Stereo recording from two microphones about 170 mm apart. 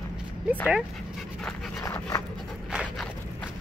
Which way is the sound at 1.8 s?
15° left (ahead or behind).